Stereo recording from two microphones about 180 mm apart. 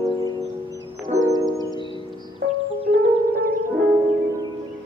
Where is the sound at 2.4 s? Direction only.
90° right.